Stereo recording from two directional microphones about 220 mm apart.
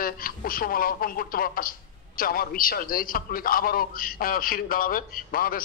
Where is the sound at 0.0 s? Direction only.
40° left (ahead or behind).